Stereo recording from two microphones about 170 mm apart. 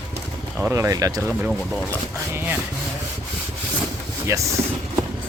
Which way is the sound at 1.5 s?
5° left (ahead or behind).